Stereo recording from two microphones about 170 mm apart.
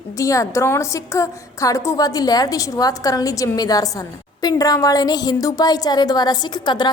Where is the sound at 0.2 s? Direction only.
20° left (ahead or behind).